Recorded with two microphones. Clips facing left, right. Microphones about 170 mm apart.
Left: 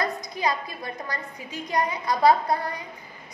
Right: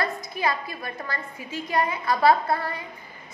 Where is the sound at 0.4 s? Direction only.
20° left (ahead or behind).